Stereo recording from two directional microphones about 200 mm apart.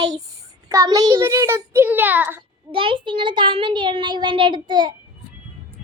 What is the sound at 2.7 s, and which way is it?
A child's voice, 25° right (ahead or behind).